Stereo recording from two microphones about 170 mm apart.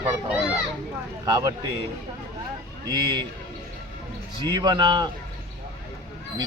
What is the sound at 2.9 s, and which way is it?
Speech, 25° right (ahead or behind).